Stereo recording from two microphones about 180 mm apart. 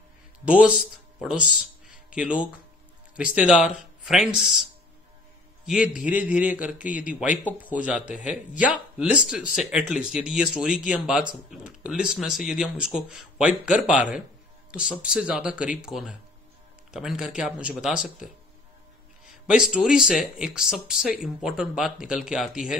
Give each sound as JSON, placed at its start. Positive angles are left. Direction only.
{"t": 0.5, "sound": "a man's voice", "side_deg": -5}
{"t": 1.6, "sound": "music", "side_deg": -5}
{"t": 3.2, "sound": "a man's voice", "side_deg": -5}
{"t": 5.7, "sound": "a man's voice", "side_deg": -5}
{"t": 19.4, "sound": "speech", "side_deg": -5}